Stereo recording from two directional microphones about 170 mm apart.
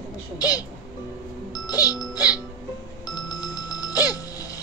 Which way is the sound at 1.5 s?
20° left (ahead or behind).